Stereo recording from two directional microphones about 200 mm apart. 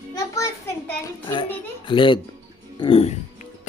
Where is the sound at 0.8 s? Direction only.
20° left (ahead or behind).